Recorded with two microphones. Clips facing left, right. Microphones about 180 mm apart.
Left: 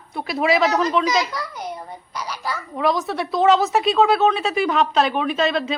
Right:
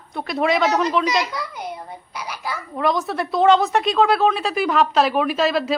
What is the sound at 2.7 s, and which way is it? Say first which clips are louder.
A man's voice: even; centre (ahead or behind).